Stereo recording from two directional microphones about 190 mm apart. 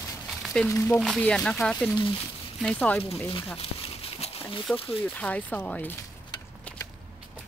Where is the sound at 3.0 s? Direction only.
30° left (ahead or behind).